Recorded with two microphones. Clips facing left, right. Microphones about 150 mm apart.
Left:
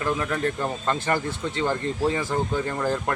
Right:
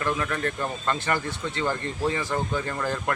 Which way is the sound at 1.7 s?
10° left (ahead or behind).